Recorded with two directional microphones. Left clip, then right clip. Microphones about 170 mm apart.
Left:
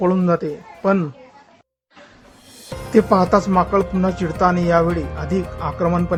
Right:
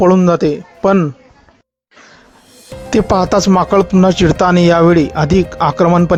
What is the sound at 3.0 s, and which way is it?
Speech, 55° right (ahead or behind).